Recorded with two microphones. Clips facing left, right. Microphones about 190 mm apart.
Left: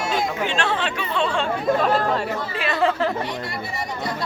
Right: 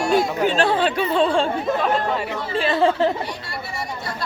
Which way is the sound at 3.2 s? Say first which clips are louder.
Left 2 dB; 20° left (ahead or behind).